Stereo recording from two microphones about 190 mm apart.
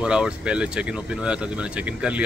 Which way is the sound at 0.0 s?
5° right (ahead or behind).